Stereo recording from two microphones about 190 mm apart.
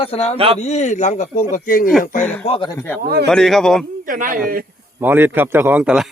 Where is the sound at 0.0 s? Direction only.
35° left (ahead or behind).